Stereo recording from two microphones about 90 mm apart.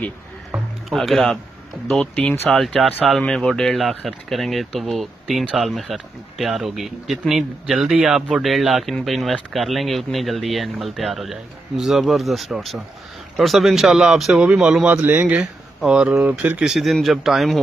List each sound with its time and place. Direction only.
0.8 s speech: centre (ahead or behind)
2.1 s speech: 15° left (ahead or behind)
2.6 s speech: centre (ahead or behind)
16.7 s speech: centre (ahead or behind)